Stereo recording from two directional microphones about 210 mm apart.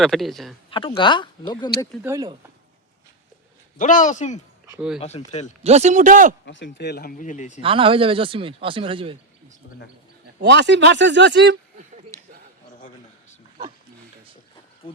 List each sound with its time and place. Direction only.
0.0 s speech: centre (ahead or behind)
0.7 s speech: 25° left (ahead or behind)
2.0 s speech: 15° right (ahead or behind)
3.8 s speech: 35° left (ahead or behind)
5.6 s speech: 30° right (ahead or behind)
6.4 s speech: 60° left (ahead or behind); by 7.6 s 35° left (ahead or behind)
7.6 s speech: 25° right (ahead or behind)
9.6 s speech: 55° left (ahead or behind)
10.4 s speech: 55° right (ahead or behind)
12.1 s a sound: 15° left (ahead or behind)
14.8 s speech: 25° left (ahead or behind)